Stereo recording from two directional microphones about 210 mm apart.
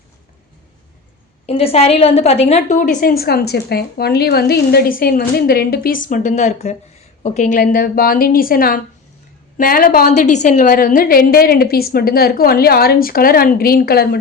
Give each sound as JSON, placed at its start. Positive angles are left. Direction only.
{"t": 1.5, "sound": "a woman's voice", "side_deg": 30}